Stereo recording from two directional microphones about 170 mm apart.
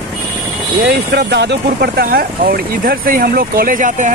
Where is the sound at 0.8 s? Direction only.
75° right (ahead or behind).